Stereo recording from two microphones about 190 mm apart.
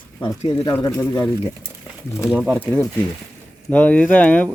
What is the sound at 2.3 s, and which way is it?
Speech, 5° right (ahead or behind).